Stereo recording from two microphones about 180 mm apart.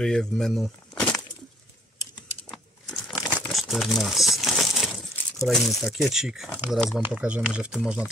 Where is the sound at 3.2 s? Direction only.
5° right (ahead or behind).